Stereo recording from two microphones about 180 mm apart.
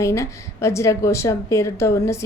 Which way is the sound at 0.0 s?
15° left (ahead or behind).